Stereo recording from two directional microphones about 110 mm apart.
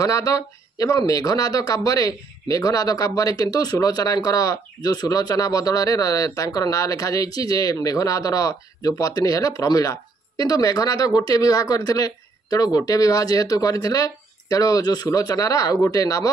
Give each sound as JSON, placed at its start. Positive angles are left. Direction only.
{"t": 0.0, "sound": "speech", "side_deg": 30}